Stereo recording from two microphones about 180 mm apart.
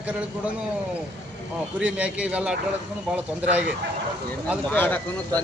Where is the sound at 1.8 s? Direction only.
5° right (ahead or behind).